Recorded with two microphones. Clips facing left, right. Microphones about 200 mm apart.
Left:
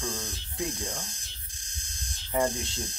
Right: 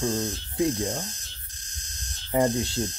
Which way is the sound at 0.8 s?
30° right (ahead or behind).